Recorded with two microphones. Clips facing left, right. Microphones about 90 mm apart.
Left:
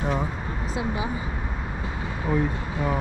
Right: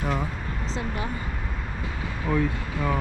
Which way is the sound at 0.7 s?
10° left (ahead or behind).